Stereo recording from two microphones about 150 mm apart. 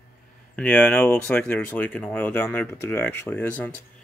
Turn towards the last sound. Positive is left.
turn(degrees=10)  # may be behind; listen again after turning